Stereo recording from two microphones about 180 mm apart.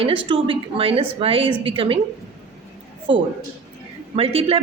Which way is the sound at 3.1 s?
30° right (ahead or behind).